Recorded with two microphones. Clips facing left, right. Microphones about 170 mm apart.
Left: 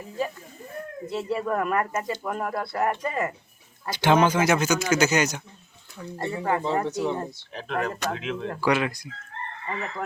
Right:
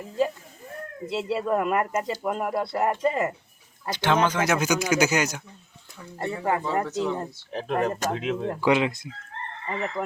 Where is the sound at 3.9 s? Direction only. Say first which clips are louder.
Left 3 dB; 10° left (ahead or behind).